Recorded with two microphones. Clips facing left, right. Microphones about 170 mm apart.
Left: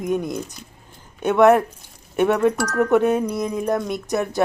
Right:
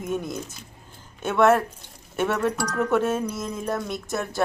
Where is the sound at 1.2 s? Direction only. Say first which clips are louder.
Left 5 dB; 15° left (ahead or behind).